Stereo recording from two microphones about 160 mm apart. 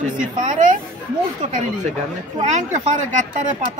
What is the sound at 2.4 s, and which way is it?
Speech, 50° right (ahead or behind).